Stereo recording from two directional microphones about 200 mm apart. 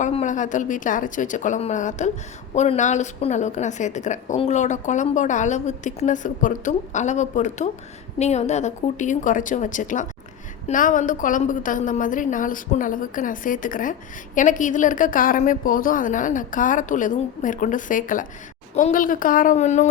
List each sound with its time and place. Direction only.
0.0 s a woman's voice: 35° left (ahead or behind)